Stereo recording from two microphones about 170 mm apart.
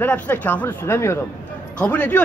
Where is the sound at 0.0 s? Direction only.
10° left (ahead or behind).